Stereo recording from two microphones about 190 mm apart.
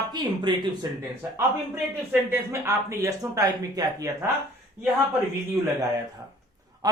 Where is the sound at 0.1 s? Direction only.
25° right (ahead or behind).